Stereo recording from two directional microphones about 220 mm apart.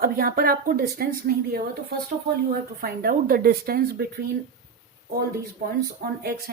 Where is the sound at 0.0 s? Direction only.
40° right (ahead or behind).